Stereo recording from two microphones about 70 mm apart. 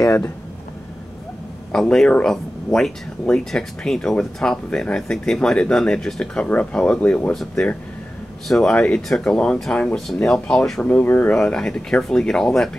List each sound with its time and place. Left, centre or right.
1.7 s speech: centre
8.5 s speech: centre
10.9 s speech: left
11.3 s speech: centre